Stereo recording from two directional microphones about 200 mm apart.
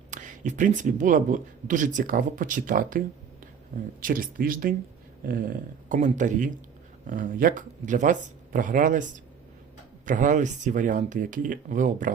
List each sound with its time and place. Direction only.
0.1 s speech: 40° right (ahead or behind)
4.0 s speech: 45° right (ahead or behind)